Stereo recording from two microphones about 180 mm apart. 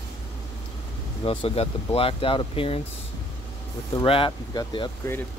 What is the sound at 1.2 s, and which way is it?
Speech, 30° left (ahead or behind).